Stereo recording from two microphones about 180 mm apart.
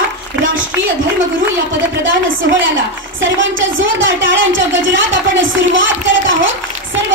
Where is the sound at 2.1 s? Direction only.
90° right.